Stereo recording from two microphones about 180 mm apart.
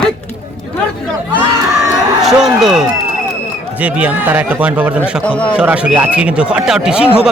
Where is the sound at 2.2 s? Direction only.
Centre (ahead or behind).